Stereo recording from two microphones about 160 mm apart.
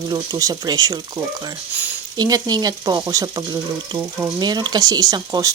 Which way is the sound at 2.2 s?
25° right (ahead or behind).